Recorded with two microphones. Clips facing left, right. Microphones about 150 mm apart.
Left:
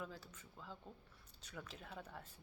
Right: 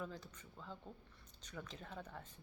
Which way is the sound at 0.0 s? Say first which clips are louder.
Right 2 dB; 5° left (ahead or behind).